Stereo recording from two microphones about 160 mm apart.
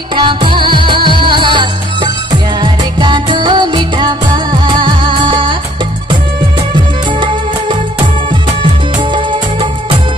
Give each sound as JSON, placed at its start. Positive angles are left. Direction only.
{"t": 0.1, "sound": "music", "side_deg": -30}
{"t": 6.7, "sound": "music", "side_deg": -30}
{"t": 9.1, "sound": "music", "side_deg": -30}